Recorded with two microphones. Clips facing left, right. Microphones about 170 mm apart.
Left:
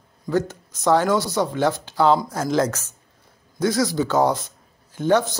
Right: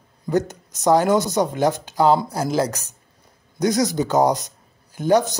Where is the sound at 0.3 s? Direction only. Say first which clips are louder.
Right 1 dB; 20° right (ahead or behind).